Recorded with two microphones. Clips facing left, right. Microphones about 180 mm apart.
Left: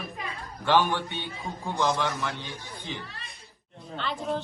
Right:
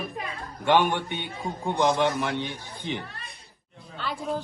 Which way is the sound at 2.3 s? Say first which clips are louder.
Right 7 dB; 60° right (ahead or behind).